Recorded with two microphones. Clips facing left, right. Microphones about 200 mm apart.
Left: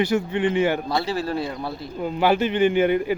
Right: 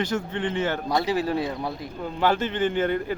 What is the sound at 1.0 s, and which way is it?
Speech, 15° right (ahead or behind).